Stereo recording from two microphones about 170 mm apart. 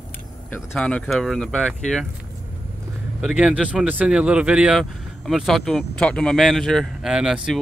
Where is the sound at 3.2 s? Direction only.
5° right (ahead or behind).